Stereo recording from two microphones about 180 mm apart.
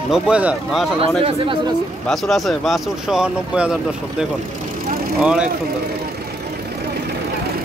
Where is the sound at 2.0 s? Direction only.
Centre (ahead or behind).